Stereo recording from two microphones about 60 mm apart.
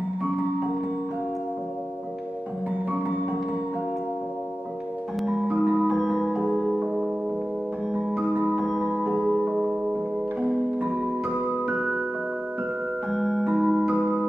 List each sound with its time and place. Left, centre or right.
5.6 s music: centre
6.0 s music: centre
8.3 s music: right
8.6 s music: centre
9.1 s music: centre
11.6 s music: centre
13.1 s music: centre; by 14.2 s right